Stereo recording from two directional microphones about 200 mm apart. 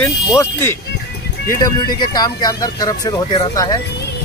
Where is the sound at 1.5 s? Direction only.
20° left (ahead or behind).